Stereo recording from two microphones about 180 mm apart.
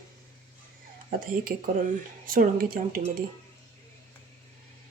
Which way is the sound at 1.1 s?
55° right (ahead or behind).